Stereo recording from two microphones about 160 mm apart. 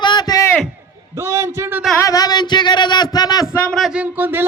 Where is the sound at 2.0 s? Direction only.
20° left (ahead or behind).